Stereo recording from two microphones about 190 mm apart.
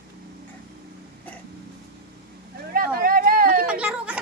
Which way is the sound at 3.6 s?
5° right (ahead or behind).